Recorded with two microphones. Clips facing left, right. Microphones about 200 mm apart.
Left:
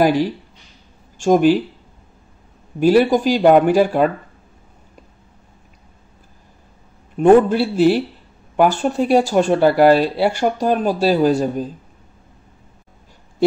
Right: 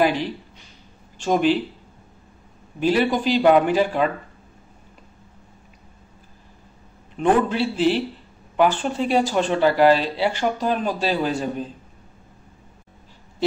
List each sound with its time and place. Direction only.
1.1 s speech: 45° left (ahead or behind)
2.8 s speech: 45° left (ahead or behind)
7.2 s speech: 45° left (ahead or behind)